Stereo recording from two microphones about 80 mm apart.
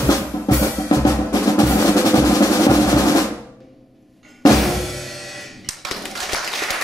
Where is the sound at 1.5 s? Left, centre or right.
Left.